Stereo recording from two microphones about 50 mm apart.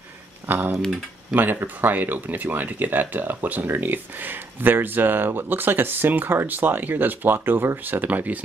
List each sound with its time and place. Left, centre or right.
0.5 s speech: right